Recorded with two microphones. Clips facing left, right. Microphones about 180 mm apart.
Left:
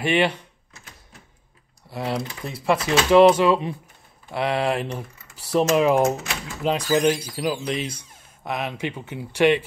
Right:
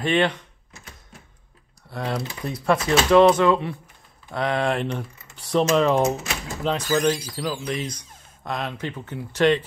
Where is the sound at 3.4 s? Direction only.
15° left (ahead or behind).